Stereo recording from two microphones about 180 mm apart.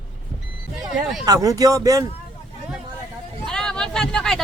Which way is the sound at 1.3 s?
20° right (ahead or behind).